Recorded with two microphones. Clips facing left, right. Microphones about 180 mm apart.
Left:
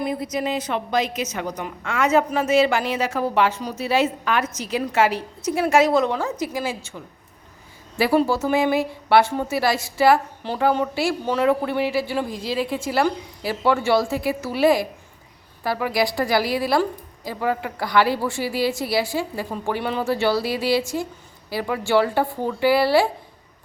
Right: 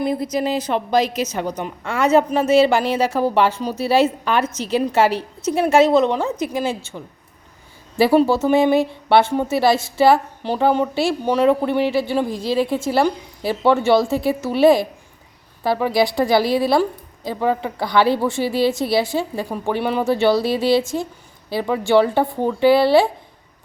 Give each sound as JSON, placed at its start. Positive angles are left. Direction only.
{"t": 0.0, "sound": "a woman's voice", "side_deg": -30}
{"t": 7.9, "sound": "a woman's voice", "side_deg": -25}